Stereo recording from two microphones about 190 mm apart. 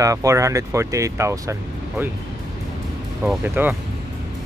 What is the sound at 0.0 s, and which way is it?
Speech, 15° right (ahead or behind).